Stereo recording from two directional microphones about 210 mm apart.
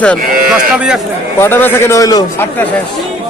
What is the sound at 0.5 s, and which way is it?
Speech, 5° right (ahead or behind).